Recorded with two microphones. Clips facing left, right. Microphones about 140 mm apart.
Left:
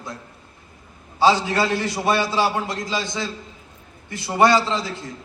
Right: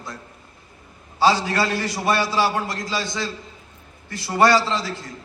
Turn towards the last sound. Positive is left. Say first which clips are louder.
# even
turn(degrees=20)  # may be behind; listen again after turning